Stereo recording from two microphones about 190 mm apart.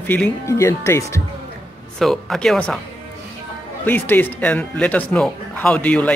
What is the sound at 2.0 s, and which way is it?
Speech, centre (ahead or behind).